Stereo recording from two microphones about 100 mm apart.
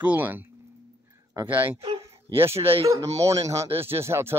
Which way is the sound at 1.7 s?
65° right (ahead or behind).